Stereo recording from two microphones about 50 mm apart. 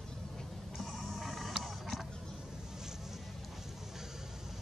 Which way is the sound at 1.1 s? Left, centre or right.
Centre.